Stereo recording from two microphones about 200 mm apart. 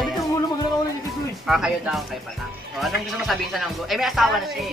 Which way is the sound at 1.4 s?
Centre (ahead or behind).